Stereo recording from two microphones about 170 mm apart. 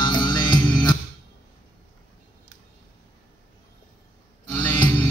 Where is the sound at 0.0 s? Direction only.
25° left (ahead or behind).